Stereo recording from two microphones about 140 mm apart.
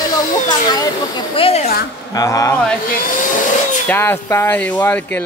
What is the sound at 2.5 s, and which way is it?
Speech, 10° left (ahead or behind).